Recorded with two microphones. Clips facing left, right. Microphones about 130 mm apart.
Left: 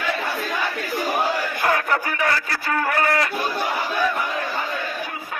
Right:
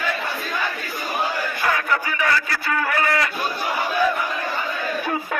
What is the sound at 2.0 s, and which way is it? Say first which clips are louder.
A man's voice: right 1 dB; 40° left (ahead or behind).